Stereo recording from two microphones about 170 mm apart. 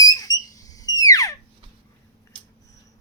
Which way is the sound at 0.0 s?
20° left (ahead or behind).